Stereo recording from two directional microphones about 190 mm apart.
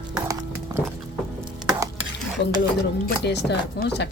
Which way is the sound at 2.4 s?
65° left (ahead or behind).